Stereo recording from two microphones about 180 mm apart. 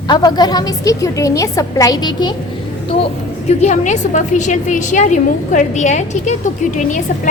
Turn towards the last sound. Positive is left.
turn(degrees=45)  # may be behind; listen again after turning